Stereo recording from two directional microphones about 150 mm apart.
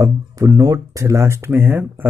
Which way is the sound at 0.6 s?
20° right (ahead or behind).